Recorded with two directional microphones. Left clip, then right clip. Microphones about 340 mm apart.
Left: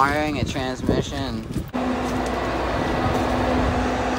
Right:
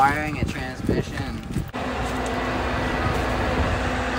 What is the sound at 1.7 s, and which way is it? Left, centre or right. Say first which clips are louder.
Vehicle: left 3 dB; left.